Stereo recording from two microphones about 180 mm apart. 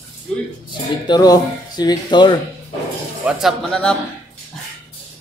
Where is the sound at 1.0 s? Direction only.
20° left (ahead or behind).